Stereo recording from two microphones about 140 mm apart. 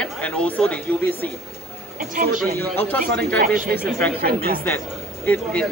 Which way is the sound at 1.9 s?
65° right (ahead or behind).